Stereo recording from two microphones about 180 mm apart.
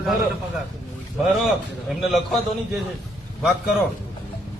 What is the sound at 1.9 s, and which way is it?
Speech, centre (ahead or behind).